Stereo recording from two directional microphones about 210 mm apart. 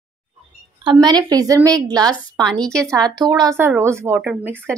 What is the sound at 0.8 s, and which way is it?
Speech, 20° right (ahead or behind).